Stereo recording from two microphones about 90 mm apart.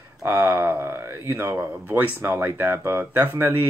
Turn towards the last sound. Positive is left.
turn(degrees=-25)  # may be behind; listen again after turning